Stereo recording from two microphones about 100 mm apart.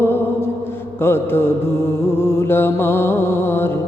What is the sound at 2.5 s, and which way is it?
Mantra, 20° left (ahead or behind).